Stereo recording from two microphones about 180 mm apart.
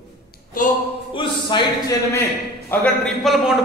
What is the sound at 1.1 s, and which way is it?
Speech, 25° left (ahead or behind).